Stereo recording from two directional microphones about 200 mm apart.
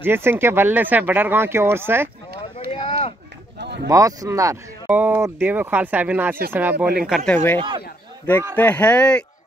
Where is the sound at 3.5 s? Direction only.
55° right (ahead or behind).